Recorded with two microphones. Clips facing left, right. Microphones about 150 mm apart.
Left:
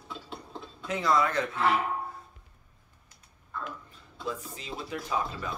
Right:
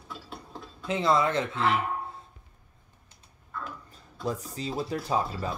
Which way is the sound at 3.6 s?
40° right (ahead or behind).